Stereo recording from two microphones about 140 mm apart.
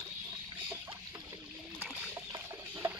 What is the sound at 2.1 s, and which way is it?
Rodents, 20° right (ahead or behind).